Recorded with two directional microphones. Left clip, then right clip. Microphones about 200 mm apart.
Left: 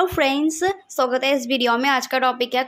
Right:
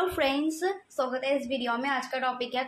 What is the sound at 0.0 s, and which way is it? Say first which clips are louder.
A woman's voice: left 8 dB; 30° left (ahead or behind).